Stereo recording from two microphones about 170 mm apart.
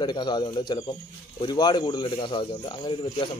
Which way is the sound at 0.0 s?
25° left (ahead or behind).